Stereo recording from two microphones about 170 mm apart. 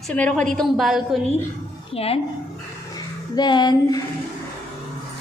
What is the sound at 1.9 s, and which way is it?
Speech, 35° left (ahead or behind).